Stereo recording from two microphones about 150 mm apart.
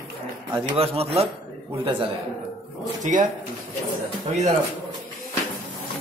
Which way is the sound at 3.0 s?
60° right (ahead or behind).